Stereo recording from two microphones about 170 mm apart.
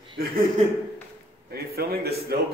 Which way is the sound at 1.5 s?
65° right (ahead or behind).